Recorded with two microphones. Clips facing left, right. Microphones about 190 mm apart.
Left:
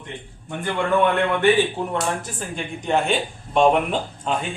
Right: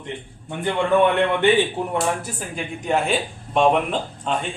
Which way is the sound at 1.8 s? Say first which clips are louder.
Right 1 dB; 15° right (ahead or behind).